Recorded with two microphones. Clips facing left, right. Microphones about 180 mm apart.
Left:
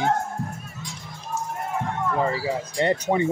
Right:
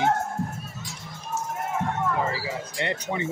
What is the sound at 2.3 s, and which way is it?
Speech, 35° left (ahead or behind).